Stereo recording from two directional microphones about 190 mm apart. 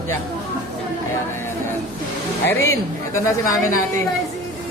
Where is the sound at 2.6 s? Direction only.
15° left (ahead or behind).